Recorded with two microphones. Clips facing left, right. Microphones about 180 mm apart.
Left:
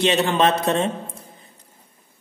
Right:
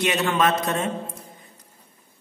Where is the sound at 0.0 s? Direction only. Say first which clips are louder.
Left 3 dB; 30° left (ahead or behind).